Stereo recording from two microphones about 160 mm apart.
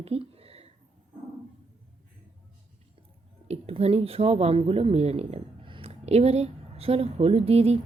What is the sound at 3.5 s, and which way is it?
Speech, 40° right (ahead or behind).